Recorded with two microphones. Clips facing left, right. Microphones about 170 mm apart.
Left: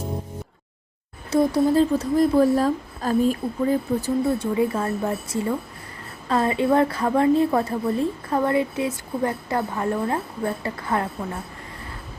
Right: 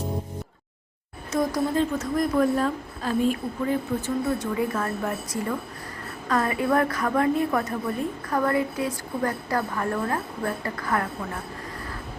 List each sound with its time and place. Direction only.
1.3 s a woman's voice: 30° left (ahead or behind)